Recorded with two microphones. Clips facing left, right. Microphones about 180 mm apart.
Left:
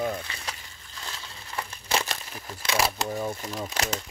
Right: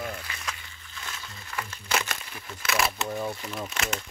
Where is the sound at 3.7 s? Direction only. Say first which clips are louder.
Left 4 dB; 35° left (ahead or behind).